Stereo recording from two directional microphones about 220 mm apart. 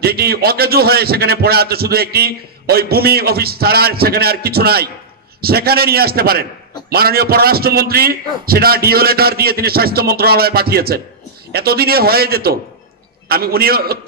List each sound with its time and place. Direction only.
0.0 s a man's voice: 45° right (ahead or behind)